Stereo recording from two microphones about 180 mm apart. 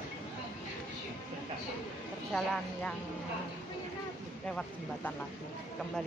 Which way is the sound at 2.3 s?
Centre (ahead or behind).